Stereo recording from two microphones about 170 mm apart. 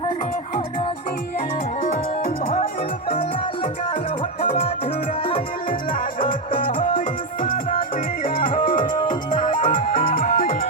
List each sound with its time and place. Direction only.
6.1 s music: 50° left (ahead or behind)
8.4 s music: 55° left (ahead or behind)